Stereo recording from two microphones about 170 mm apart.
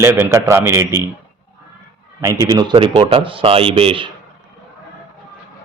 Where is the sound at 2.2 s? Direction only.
20° right (ahead or behind).